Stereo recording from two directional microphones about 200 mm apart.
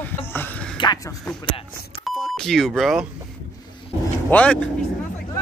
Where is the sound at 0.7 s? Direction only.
20° left (ahead or behind).